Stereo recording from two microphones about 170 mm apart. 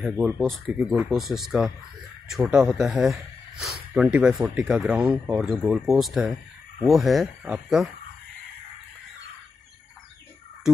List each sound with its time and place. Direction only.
0.0 s speech: centre (ahead or behind)